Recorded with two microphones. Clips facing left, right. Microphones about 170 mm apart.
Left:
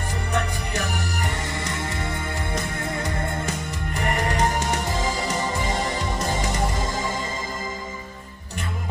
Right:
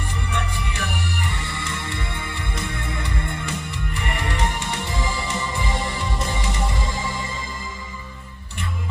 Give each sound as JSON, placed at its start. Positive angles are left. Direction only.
{"t": 0.3, "sound": "music", "side_deg": 45}